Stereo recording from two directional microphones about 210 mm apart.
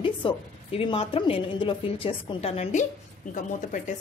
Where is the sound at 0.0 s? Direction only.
25° left (ahead or behind).